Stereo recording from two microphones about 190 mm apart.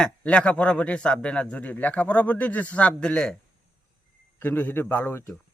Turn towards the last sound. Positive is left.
turn(degrees=10)  # may be behind; listen again after turning